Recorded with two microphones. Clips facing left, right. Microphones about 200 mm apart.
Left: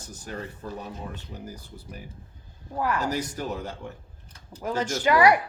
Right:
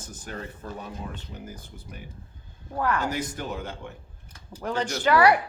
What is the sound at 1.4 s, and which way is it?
Speech, 35° left (ahead or behind).